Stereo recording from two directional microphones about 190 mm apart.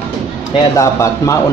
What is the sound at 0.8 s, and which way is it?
Speech, 15° left (ahead or behind).